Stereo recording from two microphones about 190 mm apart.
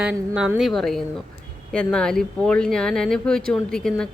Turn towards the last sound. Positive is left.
turn(degrees=5)  # may be behind; listen again after turning